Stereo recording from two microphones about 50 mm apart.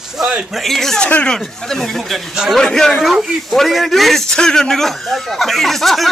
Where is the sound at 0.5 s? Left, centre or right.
Centre.